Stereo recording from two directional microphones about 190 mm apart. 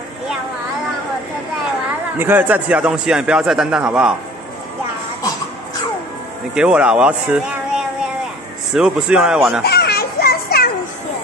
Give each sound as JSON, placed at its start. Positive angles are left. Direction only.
{"t": 2.1, "sound": "a man's voice", "side_deg": -10}
{"t": 6.5, "sound": "a man's voice", "side_deg": -5}
{"t": 9.6, "sound": "children playing", "side_deg": 55}